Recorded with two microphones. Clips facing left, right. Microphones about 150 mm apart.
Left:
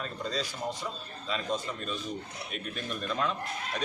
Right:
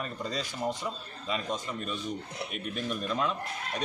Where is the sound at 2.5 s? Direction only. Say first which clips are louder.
Right 2 dB; 5° right (ahead or behind).